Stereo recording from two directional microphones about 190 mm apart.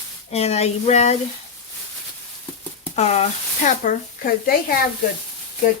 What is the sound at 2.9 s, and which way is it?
Speech, 35° left (ahead or behind).